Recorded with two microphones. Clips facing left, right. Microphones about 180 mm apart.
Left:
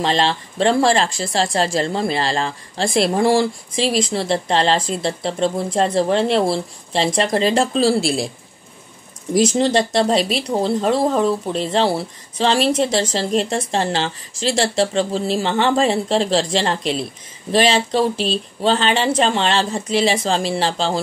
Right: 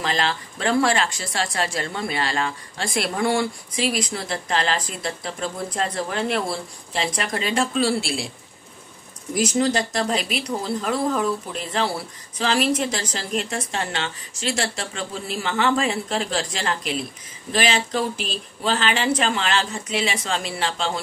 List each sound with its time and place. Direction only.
0.0 s speech: 30° left (ahead or behind)
9.3 s speech: 30° left (ahead or behind)